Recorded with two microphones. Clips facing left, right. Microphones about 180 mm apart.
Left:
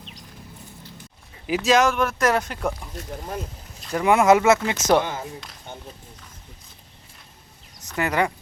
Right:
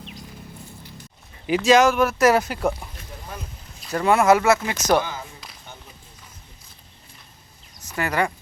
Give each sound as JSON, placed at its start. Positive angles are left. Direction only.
{"t": 1.5, "sound": "speech", "side_deg": 0}
{"t": 2.9, "sound": "speech", "side_deg": 40}
{"t": 3.9, "sound": "speech", "side_deg": 15}
{"t": 5.0, "sound": "speech", "side_deg": 50}
{"t": 7.9, "sound": "speech", "side_deg": 20}